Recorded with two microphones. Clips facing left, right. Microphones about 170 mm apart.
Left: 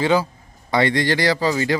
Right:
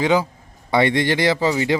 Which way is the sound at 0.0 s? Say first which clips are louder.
Even; 15° right (ahead or behind).